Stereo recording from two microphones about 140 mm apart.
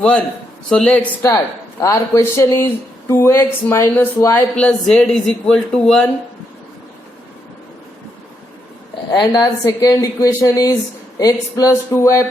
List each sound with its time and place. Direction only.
0.0 s a man's voice: 10° left (ahead or behind)
1.8 s speech: 20° left (ahead or behind)
4.5 s speech: 5° left (ahead or behind)
9.1 s speech: 30° left (ahead or behind)